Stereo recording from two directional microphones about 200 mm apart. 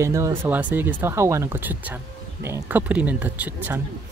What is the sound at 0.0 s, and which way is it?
Speech, 15° right (ahead or behind).